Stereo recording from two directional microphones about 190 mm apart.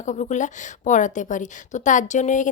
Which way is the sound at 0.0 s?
40° left (ahead or behind).